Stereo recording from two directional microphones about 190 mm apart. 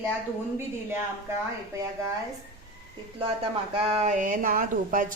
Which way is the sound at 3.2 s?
30° right (ahead or behind).